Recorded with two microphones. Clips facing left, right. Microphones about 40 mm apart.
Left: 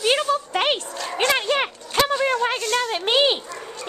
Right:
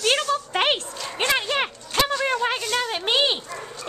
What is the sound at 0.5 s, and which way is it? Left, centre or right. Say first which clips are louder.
Dog: even; centre.